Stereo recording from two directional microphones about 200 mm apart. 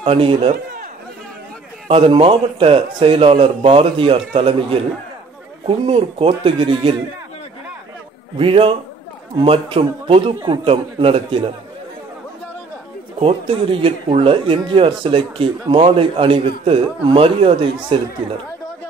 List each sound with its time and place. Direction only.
0.0 s speech: 25° right (ahead or behind)
1.9 s speech: 25° right (ahead or behind)
8.4 s speech: 25° right (ahead or behind)
13.2 s speech: 25° right (ahead or behind)